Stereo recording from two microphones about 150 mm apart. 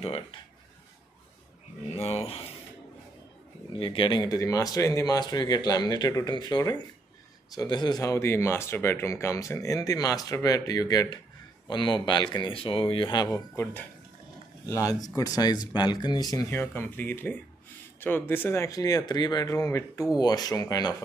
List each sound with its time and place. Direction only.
0.0 s speech: 40° left (ahead or behind)
2.0 s speech: 40° left (ahead or behind)
3.7 s speech: 35° left (ahead or behind)
14.7 s speech: 25° left (ahead or behind)